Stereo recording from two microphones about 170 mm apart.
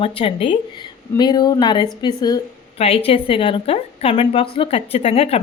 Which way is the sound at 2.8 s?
35° left (ahead or behind).